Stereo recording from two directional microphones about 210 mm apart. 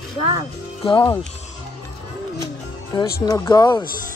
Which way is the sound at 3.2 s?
15° left (ahead or behind).